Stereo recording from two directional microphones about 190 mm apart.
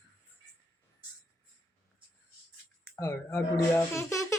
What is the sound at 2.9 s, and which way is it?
Speech, 15° left (ahead or behind).